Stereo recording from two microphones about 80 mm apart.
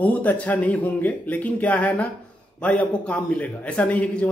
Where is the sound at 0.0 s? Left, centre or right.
Centre.